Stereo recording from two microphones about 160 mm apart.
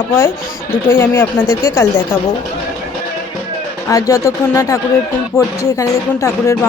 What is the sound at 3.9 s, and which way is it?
Speech, 20° left (ahead or behind).